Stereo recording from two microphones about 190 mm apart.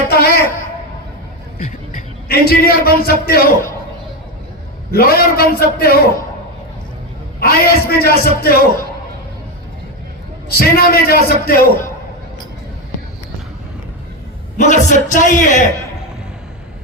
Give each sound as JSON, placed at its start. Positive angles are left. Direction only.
{"t": 0.1, "sound": "a sound", "side_deg": 55}
{"t": 1.5, "sound": "a man's voice", "side_deg": 45}
{"t": 4.9, "sound": "a man's voice", "side_deg": 55}
{"t": 7.3, "sound": "a man's voice", "side_deg": 55}
{"t": 10.5, "sound": "a man's voice", "side_deg": 50}
{"t": 14.6, "sound": "a man's voice", "side_deg": 40}